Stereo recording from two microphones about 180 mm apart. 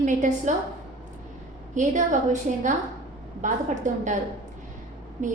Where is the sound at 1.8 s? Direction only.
45° right (ahead or behind).